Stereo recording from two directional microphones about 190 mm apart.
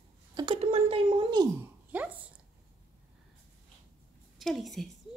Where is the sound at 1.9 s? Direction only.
10° right (ahead or behind).